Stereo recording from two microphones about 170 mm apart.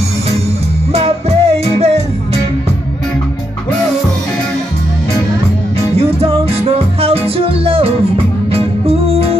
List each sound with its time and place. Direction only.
0.9 s music: 35° right (ahead or behind)
5.9 s music: 35° right (ahead or behind)